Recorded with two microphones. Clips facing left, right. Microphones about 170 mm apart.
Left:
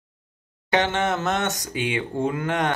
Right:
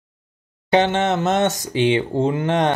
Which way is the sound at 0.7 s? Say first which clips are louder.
Right 5 dB; 25° right (ahead or behind).